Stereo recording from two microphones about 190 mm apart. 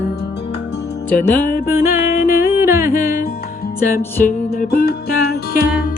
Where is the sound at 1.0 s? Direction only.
10° left (ahead or behind).